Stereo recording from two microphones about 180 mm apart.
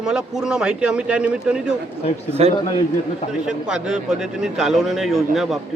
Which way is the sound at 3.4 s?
5° right (ahead or behind).